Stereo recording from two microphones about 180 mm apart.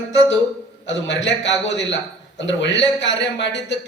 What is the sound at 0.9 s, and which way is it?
A man's voice, 85° left.